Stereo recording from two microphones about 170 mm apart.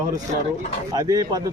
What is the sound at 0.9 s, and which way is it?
Speech, 20° right (ahead or behind).